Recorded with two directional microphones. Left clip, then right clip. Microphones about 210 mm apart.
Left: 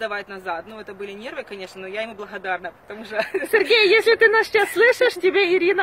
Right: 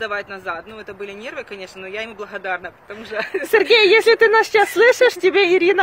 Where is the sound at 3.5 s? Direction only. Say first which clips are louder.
Right 4 dB; 20° right (ahead or behind).